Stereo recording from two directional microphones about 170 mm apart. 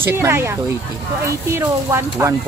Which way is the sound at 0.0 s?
15° right (ahead or behind).